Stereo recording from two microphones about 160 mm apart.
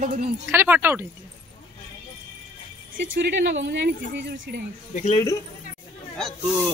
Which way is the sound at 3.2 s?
90° right.